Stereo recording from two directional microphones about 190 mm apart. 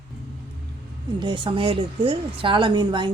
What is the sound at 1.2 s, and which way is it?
A woman's voice, 25° right (ahead or behind).